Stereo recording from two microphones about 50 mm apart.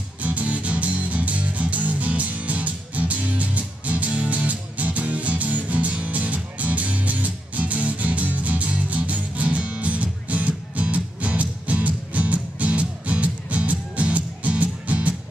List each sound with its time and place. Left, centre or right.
0.2 s music: right